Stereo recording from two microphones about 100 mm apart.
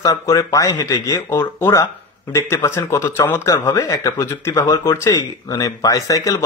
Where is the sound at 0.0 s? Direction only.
35° left (ahead or behind).